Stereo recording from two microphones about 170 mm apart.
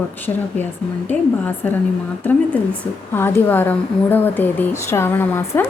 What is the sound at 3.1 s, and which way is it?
Speech, 15° left (ahead or behind).